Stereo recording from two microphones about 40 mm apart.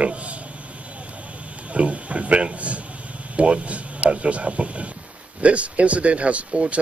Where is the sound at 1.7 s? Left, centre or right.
Right.